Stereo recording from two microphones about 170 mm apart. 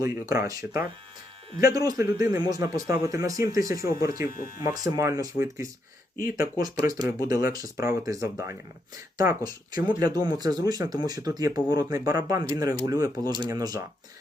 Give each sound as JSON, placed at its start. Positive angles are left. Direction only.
{"t": 0.0, "sound": "speech", "side_deg": -20}
{"t": 4.3, "sound": "speech", "side_deg": 55}
{"t": 4.5, "sound": "speech", "side_deg": -20}